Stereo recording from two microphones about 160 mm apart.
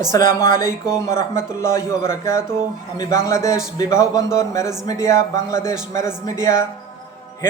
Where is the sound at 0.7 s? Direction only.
15° left (ahead or behind).